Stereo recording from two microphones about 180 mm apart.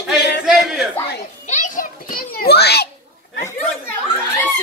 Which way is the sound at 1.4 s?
45° left (ahead or behind).